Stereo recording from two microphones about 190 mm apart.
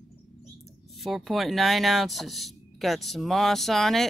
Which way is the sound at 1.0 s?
Centre (ahead or behind).